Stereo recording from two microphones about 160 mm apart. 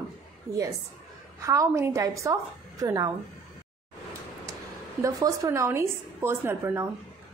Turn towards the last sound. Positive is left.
turn(degrees=-15)  # may be behind; listen again after turning